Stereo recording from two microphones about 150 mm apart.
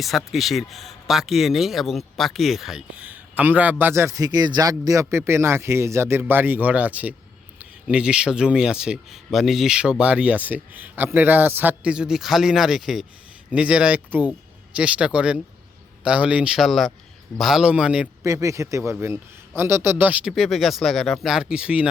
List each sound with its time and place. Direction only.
0.0 s speech: centre (ahead or behind)
18.2 s speech: 20° right (ahead or behind)